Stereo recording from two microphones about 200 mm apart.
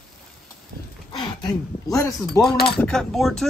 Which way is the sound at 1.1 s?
20° left (ahead or behind).